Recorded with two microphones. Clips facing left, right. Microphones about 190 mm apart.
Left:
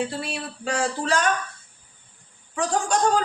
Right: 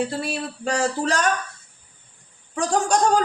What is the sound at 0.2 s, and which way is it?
Speech, 40° right (ahead or behind).